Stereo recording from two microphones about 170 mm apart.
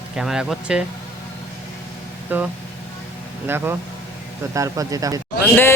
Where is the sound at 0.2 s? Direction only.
5° right (ahead or behind).